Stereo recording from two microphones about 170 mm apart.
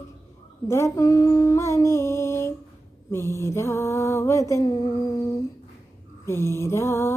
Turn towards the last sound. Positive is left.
turn(degrees=15)  # may be behind; listen again after turning